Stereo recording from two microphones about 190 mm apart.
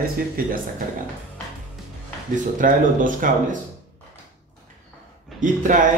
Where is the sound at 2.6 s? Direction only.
45° right (ahead or behind).